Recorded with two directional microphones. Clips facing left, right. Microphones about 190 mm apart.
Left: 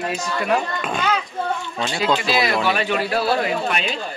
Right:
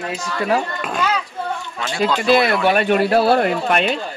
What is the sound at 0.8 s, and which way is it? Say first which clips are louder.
Children playing: right 2 dB; 5° right (ahead or behind).